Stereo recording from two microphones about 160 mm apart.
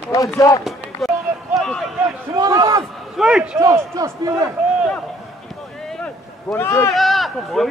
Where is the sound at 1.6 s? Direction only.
5° left (ahead or behind).